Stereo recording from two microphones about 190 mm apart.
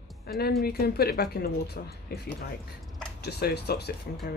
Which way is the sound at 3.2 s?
60° left (ahead or behind).